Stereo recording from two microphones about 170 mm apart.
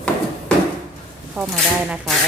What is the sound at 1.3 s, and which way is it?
Speech, centre (ahead or behind).